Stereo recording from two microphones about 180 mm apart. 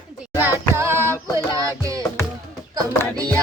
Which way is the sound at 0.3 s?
10° right (ahead or behind).